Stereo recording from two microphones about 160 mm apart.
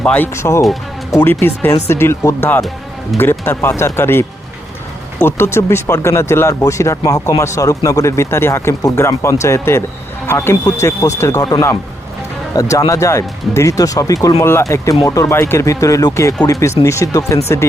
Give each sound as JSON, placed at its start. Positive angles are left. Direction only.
{"t": 0.0, "sound": "speech", "side_deg": 10}